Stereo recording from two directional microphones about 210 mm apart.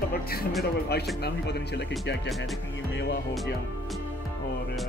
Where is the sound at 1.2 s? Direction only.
50° left (ahead or behind).